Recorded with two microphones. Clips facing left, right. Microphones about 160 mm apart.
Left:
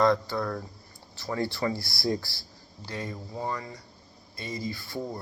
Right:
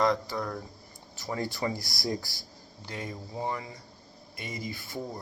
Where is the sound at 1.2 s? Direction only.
15° right (ahead or behind).